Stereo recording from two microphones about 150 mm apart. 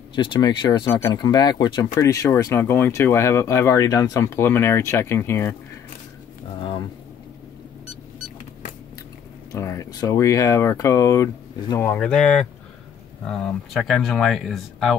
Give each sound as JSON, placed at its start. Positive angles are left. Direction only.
{"t": 0.1, "sound": "speech", "side_deg": 30}
{"t": 9.5, "sound": "speech", "side_deg": 20}
{"t": 12.1, "sound": "speech", "side_deg": 5}